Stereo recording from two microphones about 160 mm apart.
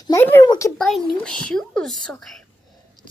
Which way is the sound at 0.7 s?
5° left (ahead or behind).